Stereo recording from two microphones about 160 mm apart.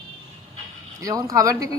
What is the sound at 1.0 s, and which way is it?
Speech, 20° right (ahead or behind).